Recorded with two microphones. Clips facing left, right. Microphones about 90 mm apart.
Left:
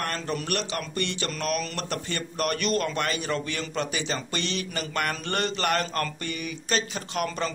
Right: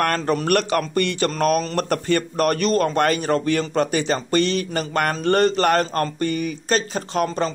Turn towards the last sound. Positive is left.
turn(degrees=-35)  # may be behind; listen again after turning